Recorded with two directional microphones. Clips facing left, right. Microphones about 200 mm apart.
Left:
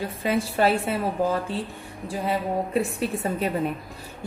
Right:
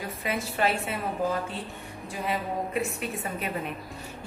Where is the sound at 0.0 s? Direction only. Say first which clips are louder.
Left 6 dB; 30° left (ahead or behind).